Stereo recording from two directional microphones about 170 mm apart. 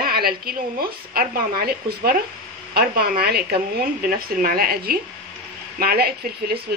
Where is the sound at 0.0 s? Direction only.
60° right (ahead or behind).